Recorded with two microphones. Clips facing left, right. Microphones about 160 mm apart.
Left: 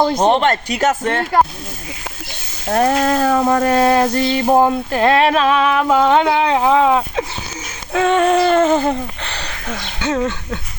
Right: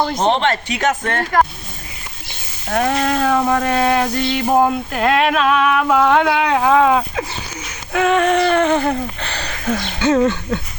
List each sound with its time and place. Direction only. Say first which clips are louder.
0.3 s speech: left 2 dB; 45° left (ahead or behind)
0.8 s speech: left 3 dB; 5° left (ahead or behind)
2.6 s a sound: left 3 dB; 35° left (ahead or behind)
9.4 s speech: right 9 dB; centre (ahead or behind)